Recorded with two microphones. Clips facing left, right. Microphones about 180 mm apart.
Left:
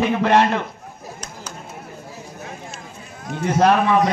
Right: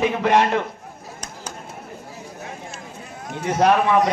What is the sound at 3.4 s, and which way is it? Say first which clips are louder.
Speech: left 1 dB; 15° right (ahead or behind).